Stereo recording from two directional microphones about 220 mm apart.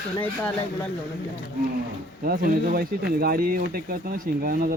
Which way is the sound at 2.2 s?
40° right (ahead or behind).